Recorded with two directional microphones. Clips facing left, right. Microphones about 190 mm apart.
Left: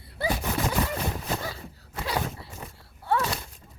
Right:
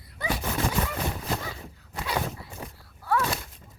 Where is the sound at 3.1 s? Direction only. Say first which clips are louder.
Even; 25° left (ahead or behind).